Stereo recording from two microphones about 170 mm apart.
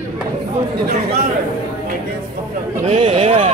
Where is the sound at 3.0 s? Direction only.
35° right (ahead or behind).